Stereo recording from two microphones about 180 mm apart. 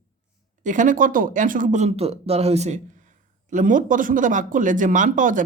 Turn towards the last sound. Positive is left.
turn(degrees=-45)  # may be behind; listen again after turning